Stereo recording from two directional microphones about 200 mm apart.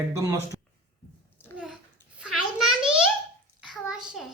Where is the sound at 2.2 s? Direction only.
Centre (ahead or behind).